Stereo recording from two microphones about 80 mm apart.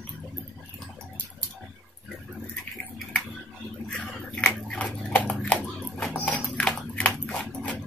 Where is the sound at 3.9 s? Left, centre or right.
Centre.